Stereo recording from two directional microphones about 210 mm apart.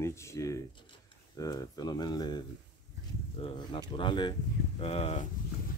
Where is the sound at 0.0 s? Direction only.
15° left (ahead or behind); by 5.3 s 30° left (ahead or behind).